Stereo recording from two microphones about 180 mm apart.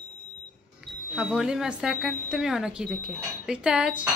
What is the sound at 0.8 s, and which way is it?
Wind chime, 5° right (ahead or behind).